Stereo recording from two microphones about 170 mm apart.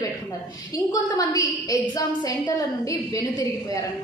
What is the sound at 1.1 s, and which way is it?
A woman's voice, 20° left (ahead or behind).